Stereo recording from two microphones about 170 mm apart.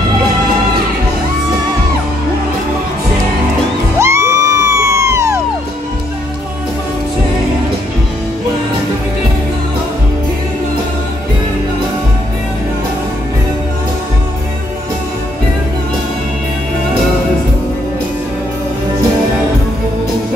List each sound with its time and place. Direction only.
4.0 s music: 15° right (ahead or behind)